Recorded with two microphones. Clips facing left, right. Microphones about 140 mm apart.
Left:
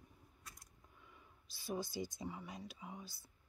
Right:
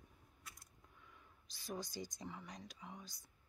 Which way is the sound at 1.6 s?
5° left (ahead or behind).